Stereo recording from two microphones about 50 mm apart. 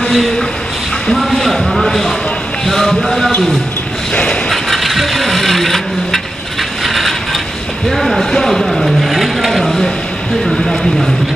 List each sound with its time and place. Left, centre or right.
0.1 s speech: centre
4.1 s a sound: centre
4.5 s vehicle: centre
6.8 s mechanisms: centre
7.9 s speech: centre
8.3 s vehicle: centre
10.4 s a sound: centre